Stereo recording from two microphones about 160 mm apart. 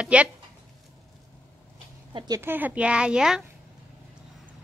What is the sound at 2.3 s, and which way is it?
A woman's voice, 15° right (ahead or behind).